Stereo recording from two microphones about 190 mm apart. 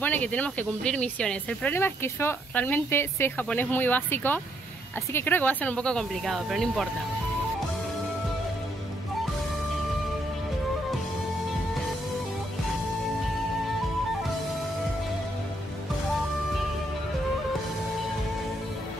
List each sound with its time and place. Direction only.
0.0 s speech: 10° left (ahead or behind)